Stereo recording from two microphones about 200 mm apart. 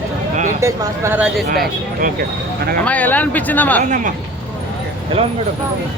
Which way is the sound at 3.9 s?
40° right (ahead or behind).